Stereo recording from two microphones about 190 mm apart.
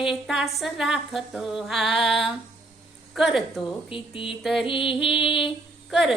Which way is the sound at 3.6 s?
25° left (ahead or behind).